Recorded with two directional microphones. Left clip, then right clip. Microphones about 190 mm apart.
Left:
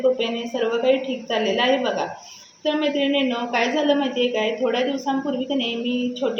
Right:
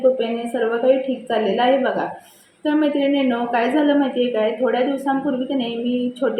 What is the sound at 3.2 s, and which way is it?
A woman's voice, 5° left (ahead or behind).